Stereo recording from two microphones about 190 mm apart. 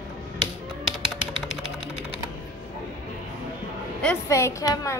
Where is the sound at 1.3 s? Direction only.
75° left (ahead or behind).